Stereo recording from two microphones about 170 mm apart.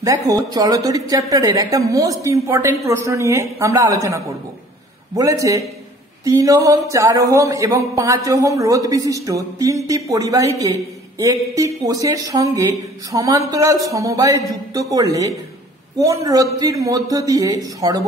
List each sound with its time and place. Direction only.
0.0 s a man's voice: 20° right (ahead or behind)